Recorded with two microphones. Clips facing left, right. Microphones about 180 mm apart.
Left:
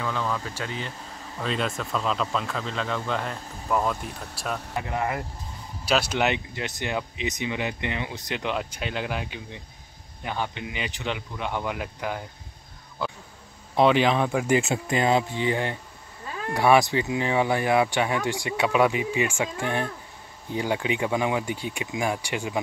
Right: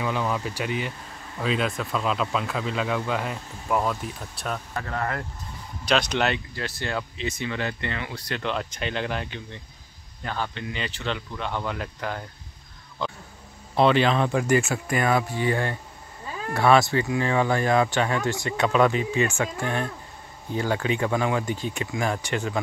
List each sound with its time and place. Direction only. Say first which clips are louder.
0.0 s speech: right 2 dB; 15° right (ahead or behind); by 4.6 s centre (ahead or behind)
4.7 s speech: left 3 dB; 15° left (ahead or behind)
13.0 s a sound: even; 5° left (ahead or behind)
13.7 s speech: even; 10° left (ahead or behind)
14.6 s speech: left 1 dB; 20° left (ahead or behind)